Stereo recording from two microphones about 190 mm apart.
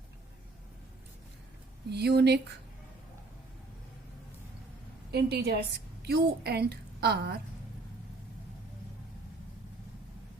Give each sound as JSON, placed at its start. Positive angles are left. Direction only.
{"t": 1.9, "sound": "speech", "side_deg": -60}
{"t": 5.1, "sound": "a woman's voice", "side_deg": -60}